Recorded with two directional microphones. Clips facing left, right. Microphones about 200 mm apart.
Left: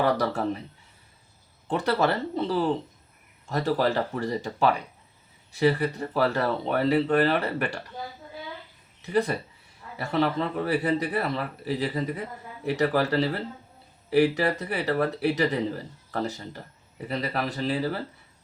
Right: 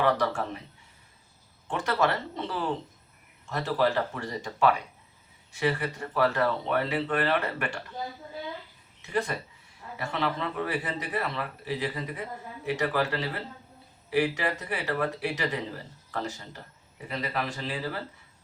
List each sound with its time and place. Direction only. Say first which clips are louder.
0.0 s speech: left 1 dB; 35° left (ahead or behind)
1.6 s speech: left 3 dB; 35° left (ahead or behind)
9.0 s speech: left 5 dB; 35° left (ahead or behind)